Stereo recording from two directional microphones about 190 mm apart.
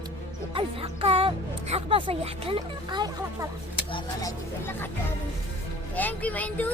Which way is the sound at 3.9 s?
15° left (ahead or behind).